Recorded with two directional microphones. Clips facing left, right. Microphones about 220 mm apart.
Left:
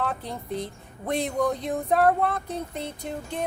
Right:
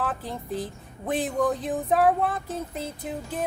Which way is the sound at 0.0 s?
Centre (ahead or behind).